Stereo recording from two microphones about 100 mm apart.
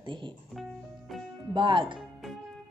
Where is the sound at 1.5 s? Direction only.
55° right (ahead or behind).